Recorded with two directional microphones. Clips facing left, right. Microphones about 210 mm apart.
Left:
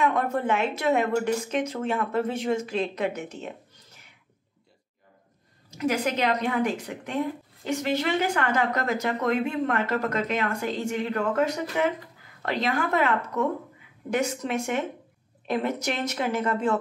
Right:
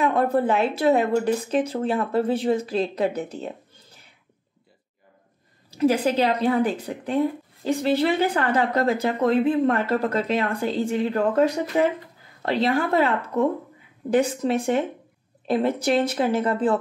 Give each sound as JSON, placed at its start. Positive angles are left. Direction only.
{"t": 0.0, "sound": "speech", "side_deg": -35}
{"t": 5.7, "sound": "speech", "side_deg": -30}